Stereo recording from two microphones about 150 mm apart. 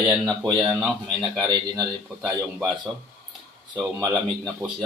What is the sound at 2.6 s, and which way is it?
Speech, 5° left (ahead or behind).